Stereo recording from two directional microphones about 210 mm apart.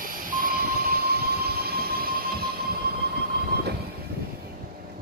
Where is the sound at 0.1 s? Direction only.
40° right (ahead or behind).